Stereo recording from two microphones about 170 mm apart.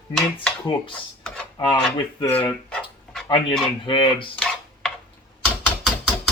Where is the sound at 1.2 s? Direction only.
5° left (ahead or behind).